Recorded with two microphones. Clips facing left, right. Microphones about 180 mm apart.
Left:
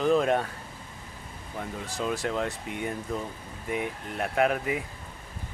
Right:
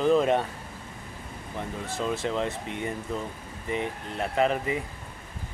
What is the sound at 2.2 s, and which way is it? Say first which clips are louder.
Speech: right 1 dB; centre (ahead or behind).